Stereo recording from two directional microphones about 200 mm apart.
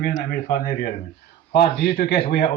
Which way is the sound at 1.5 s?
50° left (ahead or behind).